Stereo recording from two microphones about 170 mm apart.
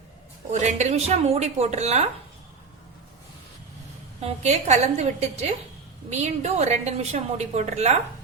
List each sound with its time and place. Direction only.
0.5 s a woman's voice: 45° right (ahead or behind)
4.2 s a woman's voice: 40° right (ahead or behind)